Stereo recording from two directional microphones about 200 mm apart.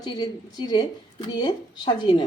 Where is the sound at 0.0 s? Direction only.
20° left (ahead or behind).